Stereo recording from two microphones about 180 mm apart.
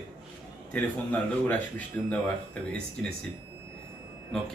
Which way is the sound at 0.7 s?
10° left (ahead or behind).